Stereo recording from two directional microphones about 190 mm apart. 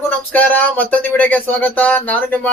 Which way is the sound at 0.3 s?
10° left (ahead or behind).